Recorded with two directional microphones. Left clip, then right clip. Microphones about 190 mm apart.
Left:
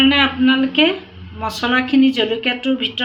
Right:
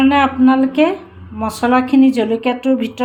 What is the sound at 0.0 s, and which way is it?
Speech, 55° right (ahead or behind).